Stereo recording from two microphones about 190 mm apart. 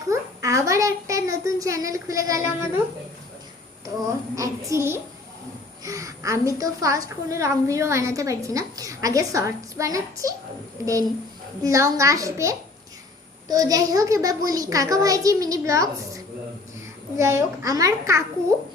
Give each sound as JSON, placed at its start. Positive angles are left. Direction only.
{"t": 0.1, "sound": "a sound", "side_deg": -15}
{"t": 4.4, "sound": "a woman's voice", "side_deg": -15}
{"t": 11.6, "sound": "a woman's voice", "side_deg": -15}